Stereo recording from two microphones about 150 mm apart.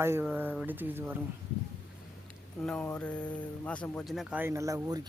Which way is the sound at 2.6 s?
5° left (ahead or behind).